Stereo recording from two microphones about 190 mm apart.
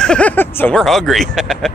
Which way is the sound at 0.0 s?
5° left (ahead or behind).